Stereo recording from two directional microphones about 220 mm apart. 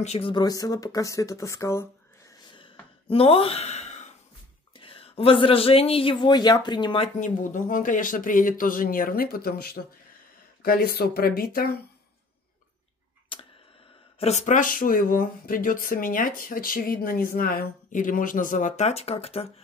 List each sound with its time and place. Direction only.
0.0 s speech: 25° left (ahead or behind)
2.5 s sigh: 25° left (ahead or behind)
4.7 s speech: 25° left (ahead or behind); by 11.6 s 40° left (ahead or behind)
13.3 s a sound: 25° left (ahead or behind)
14.2 s speech: 30° left (ahead or behind)